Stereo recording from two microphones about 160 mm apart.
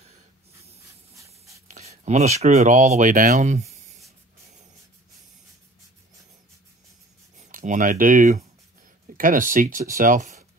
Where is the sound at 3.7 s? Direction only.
45° right (ahead or behind).